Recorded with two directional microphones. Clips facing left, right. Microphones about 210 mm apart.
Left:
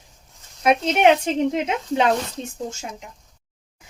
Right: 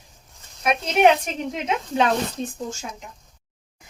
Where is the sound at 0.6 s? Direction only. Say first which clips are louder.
Left 1 dB; 25° left (ahead or behind).